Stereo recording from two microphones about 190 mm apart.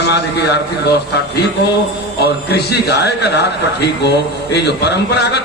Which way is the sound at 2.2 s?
60° left (ahead or behind).